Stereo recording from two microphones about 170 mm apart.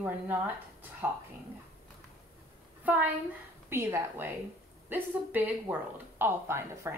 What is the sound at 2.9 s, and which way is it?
Speech, 10° right (ahead or behind).